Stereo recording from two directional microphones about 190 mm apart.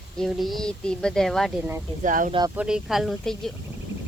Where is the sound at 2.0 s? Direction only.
45° right (ahead or behind).